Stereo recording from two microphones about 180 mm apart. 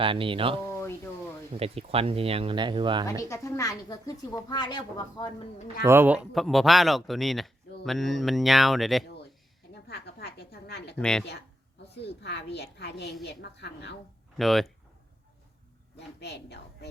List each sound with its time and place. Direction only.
0.0 s speech: 30° right (ahead or behind)
0.7 s a sound: 15° left (ahead or behind)
1.5 s speech: 35° right (ahead or behind)
3.2 s speech: 15° left (ahead or behind)
5.8 s speech: 10° right (ahead or behind)
9.8 s a sound: 60° left (ahead or behind)
10.9 s speech: 5° left (ahead or behind)
12.0 s a woman's voice: 70° left (ahead or behind)
14.3 s speech: centre (ahead or behind)
16.0 s a woman's voice: 70° left (ahead or behind)